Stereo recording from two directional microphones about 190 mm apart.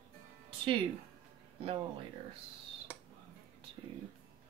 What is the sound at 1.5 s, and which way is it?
Speech, 30° right (ahead or behind).